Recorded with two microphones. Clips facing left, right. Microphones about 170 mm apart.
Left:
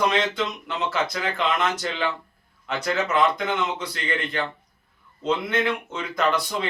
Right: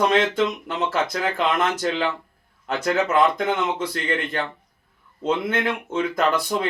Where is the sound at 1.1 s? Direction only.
45° right (ahead or behind).